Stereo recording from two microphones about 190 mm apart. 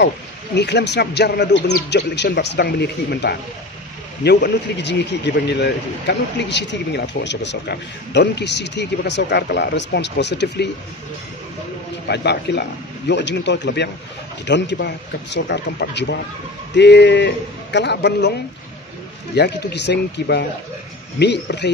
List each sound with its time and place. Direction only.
0.6 s speech: 65° left (ahead or behind)
12.1 s speech: 65° left (ahead or behind)
19.3 s speech: 65° left (ahead or behind)